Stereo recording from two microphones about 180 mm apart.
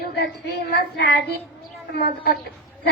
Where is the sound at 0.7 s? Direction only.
70° left (ahead or behind).